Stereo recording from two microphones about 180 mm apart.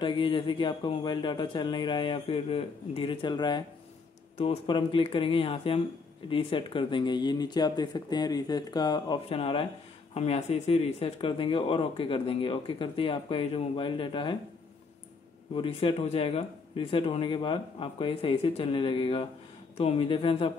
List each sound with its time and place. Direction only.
0.0 s speech: 25° left (ahead or behind)
15.5 s speech: 30° left (ahead or behind)